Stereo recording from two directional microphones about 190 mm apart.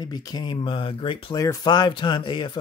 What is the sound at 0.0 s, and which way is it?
Speech, 20° left (ahead or behind).